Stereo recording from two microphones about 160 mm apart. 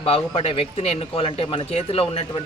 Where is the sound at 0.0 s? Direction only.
35° left (ahead or behind).